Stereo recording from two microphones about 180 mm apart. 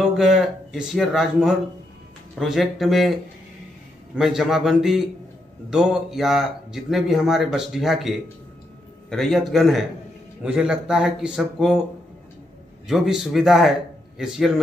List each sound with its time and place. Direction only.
0.0 s speech: 5° right (ahead or behind)
12.8 s speech: centre (ahead or behind)